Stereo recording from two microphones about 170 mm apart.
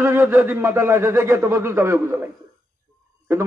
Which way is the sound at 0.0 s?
15° right (ahead or behind).